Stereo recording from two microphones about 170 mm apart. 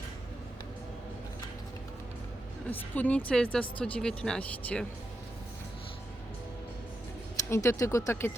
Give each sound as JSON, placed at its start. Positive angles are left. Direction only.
{"t": 2.6, "sound": "speech", "side_deg": 10}
{"t": 7.5, "sound": "speech", "side_deg": 15}